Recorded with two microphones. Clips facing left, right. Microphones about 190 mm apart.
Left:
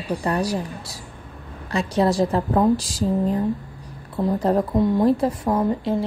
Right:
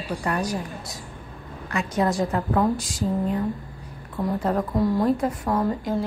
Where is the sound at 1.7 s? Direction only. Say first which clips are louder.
Left 4 dB; 30° left (ahead or behind).